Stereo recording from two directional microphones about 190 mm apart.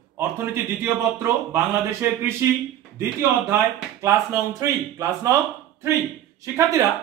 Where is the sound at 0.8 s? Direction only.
15° right (ahead or behind).